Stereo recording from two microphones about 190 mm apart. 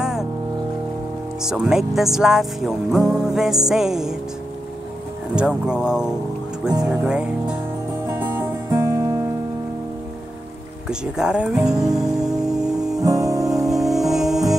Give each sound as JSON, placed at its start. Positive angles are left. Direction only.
{"t": 0.0, "sound": "music", "side_deg": -5}
{"t": 1.4, "sound": "speech", "side_deg": -5}
{"t": 5.3, "sound": "speech", "side_deg": -5}
{"t": 8.1, "sound": "music", "side_deg": -10}
{"t": 10.9, "sound": "music", "side_deg": -5}
{"t": 13.0, "sound": "music", "side_deg": -20}
{"t": 13.7, "sound": "music", "side_deg": 0}